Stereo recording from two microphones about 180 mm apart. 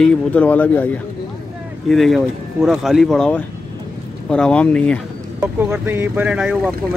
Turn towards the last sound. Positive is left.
turn(degrees=-5)  # may be behind; listen again after turning